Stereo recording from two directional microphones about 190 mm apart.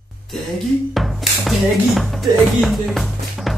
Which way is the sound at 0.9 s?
Centre (ahead or behind).